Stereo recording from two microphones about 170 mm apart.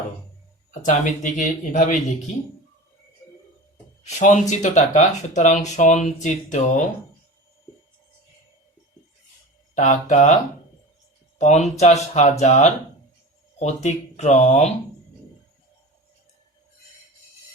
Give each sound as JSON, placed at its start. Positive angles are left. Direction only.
{"t": 0.7, "sound": "speech", "side_deg": 45}
{"t": 4.0, "sound": "speech", "side_deg": 45}
{"t": 9.7, "sound": "speech", "side_deg": 45}
{"t": 11.3, "sound": "speech", "side_deg": 45}